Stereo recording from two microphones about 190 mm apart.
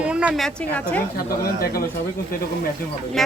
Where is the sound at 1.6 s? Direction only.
50° left (ahead or behind).